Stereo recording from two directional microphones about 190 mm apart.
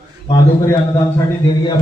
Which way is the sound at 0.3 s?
15° left (ahead or behind).